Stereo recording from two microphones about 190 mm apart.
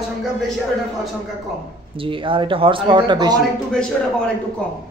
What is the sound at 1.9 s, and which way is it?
Speech, 25° right (ahead or behind).